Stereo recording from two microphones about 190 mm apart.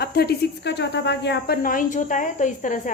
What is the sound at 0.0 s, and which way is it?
Speech, 55° left (ahead or behind).